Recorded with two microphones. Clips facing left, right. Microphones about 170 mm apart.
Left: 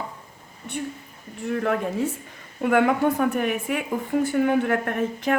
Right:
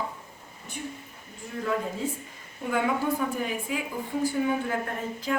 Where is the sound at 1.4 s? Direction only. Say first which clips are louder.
Left 6 dB; 70° left (ahead or behind).